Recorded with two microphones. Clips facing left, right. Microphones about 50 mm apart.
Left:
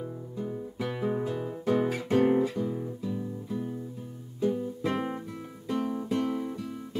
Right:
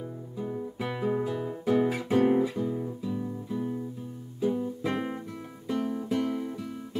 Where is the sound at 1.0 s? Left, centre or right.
Centre.